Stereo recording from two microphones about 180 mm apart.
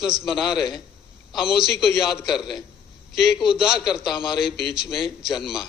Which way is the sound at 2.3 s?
25° left (ahead or behind).